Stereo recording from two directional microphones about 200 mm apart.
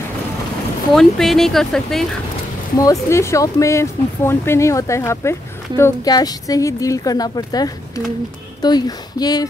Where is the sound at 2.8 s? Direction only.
15° left (ahead or behind).